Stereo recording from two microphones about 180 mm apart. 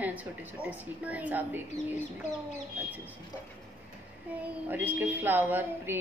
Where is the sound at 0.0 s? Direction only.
10° right (ahead or behind).